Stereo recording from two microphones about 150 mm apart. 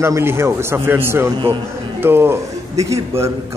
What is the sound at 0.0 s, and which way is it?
A man's voice, 15° right (ahead or behind).